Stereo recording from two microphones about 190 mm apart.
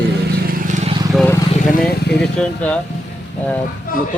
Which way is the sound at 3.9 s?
45° left (ahead or behind).